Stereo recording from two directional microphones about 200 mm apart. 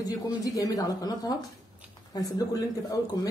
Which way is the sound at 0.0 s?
20° left (ahead or behind).